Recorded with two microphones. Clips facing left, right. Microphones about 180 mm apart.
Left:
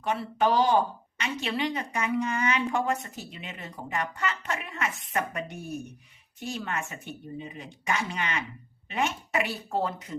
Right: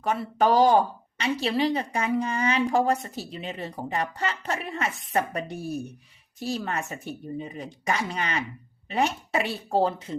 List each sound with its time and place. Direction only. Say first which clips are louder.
0.0 s a woman's voice: right 3 dB; 45° right (ahead or behind)